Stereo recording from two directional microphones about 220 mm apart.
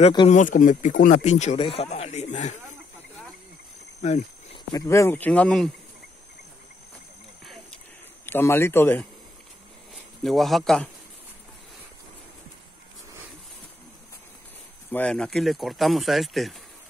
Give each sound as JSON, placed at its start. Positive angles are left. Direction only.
{"t": 0.0, "sound": "speech", "side_deg": 20}
{"t": 0.3, "sound": "speech", "side_deg": 35}
{"t": 4.0, "sound": "a sound", "side_deg": 30}
{"t": 4.7, "sound": "speech", "side_deg": 15}
{"t": 8.3, "sound": "speech", "side_deg": 10}
{"t": 10.2, "sound": "speech", "side_deg": 0}
{"t": 14.9, "sound": "speech", "side_deg": 5}